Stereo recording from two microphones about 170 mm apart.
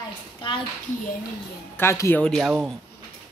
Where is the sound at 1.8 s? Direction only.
15° left (ahead or behind).